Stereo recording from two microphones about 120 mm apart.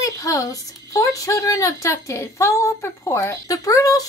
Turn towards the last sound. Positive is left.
turn(degrees=30)  # may be behind; listen again after turning